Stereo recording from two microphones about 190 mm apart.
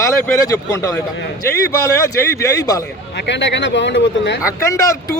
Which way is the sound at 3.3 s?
70° left (ahead or behind).